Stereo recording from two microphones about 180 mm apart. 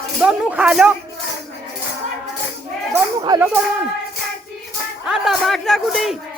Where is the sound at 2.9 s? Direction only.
20° right (ahead or behind).